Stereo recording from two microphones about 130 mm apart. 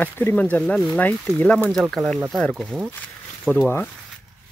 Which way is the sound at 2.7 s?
10° right (ahead or behind).